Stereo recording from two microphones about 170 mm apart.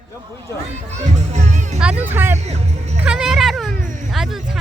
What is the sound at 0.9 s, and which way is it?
Children playing, 45° right (ahead or behind).